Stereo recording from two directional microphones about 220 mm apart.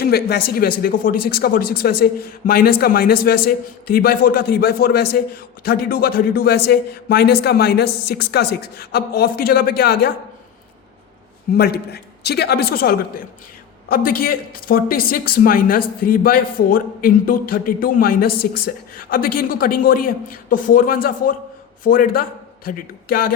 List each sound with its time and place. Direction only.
0.0 s speech: 45° left (ahead or behind)
11.5 s speech: 45° left (ahead or behind)